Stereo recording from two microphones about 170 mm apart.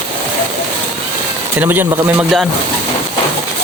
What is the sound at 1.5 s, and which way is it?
Speech, 10° right (ahead or behind).